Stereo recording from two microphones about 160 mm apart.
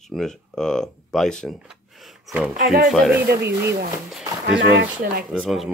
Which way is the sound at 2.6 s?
60° right (ahead or behind).